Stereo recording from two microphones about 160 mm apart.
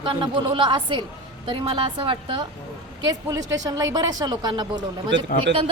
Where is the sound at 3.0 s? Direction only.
20° right (ahead or behind).